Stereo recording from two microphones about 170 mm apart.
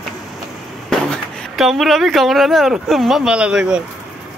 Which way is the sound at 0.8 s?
5° left (ahead or behind).